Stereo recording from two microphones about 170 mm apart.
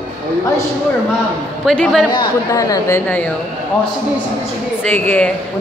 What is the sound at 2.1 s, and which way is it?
Speech, 25° left (ahead or behind).